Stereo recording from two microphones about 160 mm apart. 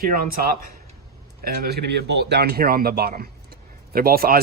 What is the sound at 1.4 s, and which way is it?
Speech, 90° right.